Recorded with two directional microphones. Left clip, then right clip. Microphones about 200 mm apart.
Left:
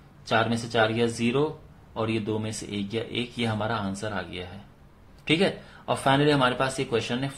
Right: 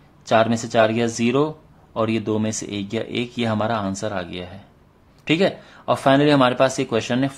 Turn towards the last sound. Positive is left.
turn(degrees=-35)  # may be behind; listen again after turning